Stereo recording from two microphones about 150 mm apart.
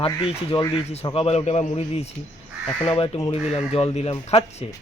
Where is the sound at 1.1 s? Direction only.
40° left (ahead or behind).